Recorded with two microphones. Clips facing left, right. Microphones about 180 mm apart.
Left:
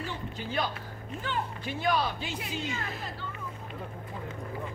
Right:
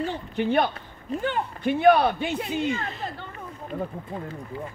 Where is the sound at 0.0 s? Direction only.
60° right (ahead or behind).